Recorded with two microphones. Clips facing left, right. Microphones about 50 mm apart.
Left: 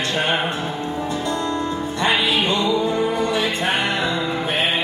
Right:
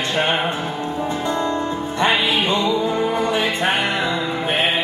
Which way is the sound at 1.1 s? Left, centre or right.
Right.